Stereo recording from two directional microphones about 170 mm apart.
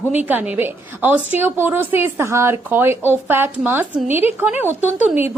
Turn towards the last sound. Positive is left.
turn(degrees=-10)  # may be behind; listen again after turning